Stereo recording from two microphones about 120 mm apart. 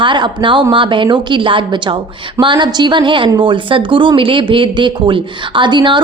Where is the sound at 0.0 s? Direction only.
40° right (ahead or behind).